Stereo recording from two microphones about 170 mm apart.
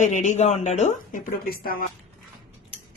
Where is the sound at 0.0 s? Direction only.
45° left (ahead or behind).